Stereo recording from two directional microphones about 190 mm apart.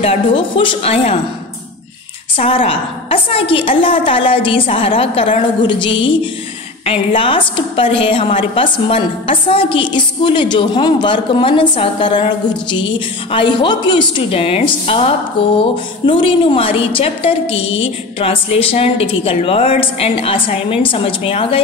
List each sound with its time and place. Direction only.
0.0 s a woman's voice: 25° left (ahead or behind)
2.3 s a woman's voice: 30° left (ahead or behind)